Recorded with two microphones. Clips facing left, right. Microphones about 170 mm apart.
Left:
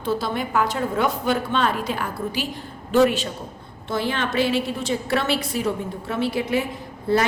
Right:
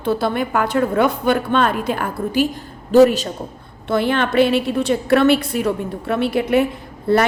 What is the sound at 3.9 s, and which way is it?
A woman's voice, 60° right (ahead or behind).